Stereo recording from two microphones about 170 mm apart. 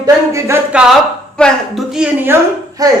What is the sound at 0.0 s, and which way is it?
A woman's voice, 20° right (ahead or behind).